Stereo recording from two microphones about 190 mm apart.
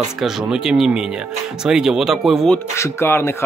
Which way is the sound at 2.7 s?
15° left (ahead or behind).